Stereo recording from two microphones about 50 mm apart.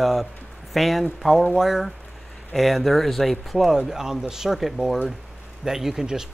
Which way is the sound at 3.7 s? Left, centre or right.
Centre.